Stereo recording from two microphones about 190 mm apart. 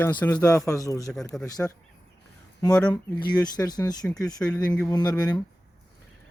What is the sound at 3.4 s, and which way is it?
Speech, 20° left (ahead or behind).